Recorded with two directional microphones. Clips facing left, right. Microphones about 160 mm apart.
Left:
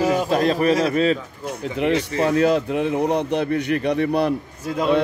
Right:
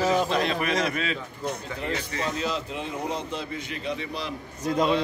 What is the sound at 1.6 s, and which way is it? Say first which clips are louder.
Speech: left 10 dB; 75° left (ahead or behind).